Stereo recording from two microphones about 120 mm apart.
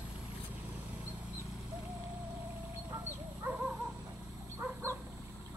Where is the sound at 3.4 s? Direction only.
15° right (ahead or behind).